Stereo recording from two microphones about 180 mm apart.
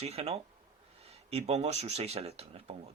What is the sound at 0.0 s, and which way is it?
Speech, 35° right (ahead or behind).